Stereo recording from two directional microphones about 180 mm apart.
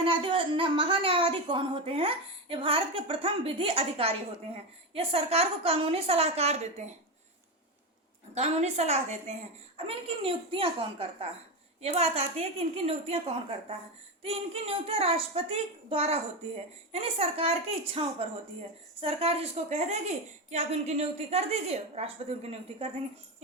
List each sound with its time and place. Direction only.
0.0 s a woman's voice: 30° right (ahead or behind)
8.4 s a woman's voice: 35° right (ahead or behind)